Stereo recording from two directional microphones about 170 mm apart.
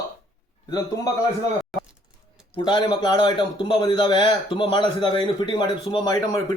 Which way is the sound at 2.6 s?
25° left (ahead or behind).